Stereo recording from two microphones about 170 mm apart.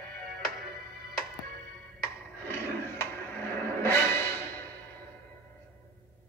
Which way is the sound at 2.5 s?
15° left (ahead or behind).